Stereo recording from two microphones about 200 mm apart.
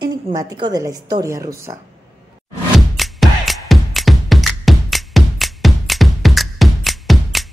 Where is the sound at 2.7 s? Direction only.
Centre (ahead or behind).